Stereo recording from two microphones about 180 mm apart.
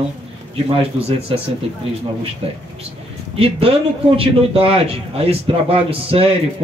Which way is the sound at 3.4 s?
30° right (ahead or behind).